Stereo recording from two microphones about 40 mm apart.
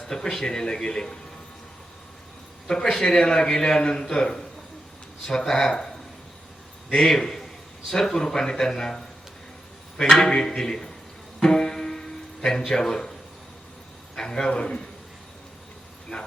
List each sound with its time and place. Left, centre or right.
0.3 s speech: centre
2.6 s a man's voice: centre
7.1 s speech: centre
11.4 s music: centre
12.5 s speech: centre
14.2 s a man's voice: centre